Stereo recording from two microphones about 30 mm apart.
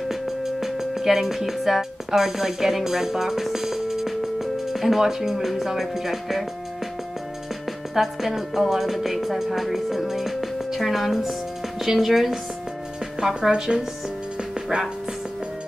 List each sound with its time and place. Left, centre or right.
0.1 s speech: centre
7.9 s speech: centre
8.4 s music: centre
13.2 s speech: right